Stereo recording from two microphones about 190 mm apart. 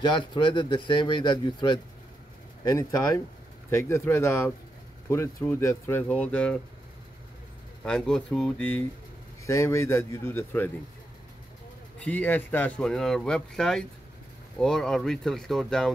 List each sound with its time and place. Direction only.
0.0 s speech: 25° left (ahead or behind); by 6.6 s 5° left (ahead or behind)
7.8 s speech: 5° left (ahead or behind)
12.0 s speech: 10° left (ahead or behind)